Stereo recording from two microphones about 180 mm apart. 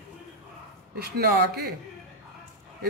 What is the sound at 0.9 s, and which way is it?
Speech, 60° right (ahead or behind).